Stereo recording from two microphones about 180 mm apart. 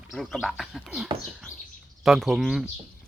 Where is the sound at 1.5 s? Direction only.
45° left (ahead or behind).